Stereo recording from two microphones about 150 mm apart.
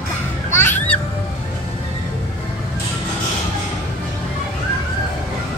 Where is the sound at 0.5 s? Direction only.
15° left (ahead or behind).